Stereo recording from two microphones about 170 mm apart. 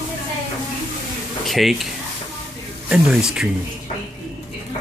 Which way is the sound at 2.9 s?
5° right (ahead or behind).